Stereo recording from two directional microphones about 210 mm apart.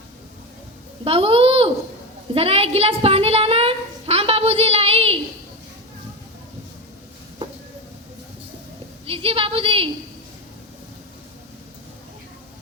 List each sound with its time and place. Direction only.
1.0 s a child's voice: 25° right (ahead or behind)
2.3 s a sound: 25° right (ahead or behind)
9.0 s a woman's voice: 25° right (ahead or behind)